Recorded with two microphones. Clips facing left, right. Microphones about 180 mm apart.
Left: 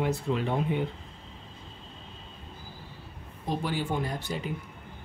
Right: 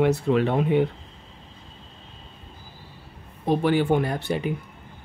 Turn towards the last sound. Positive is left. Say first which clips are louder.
# right 7 dB
turn(degrees=-65)  # may be behind; listen again after turning